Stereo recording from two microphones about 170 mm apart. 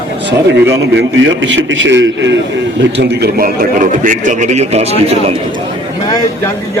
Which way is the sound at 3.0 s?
65° right (ahead or behind).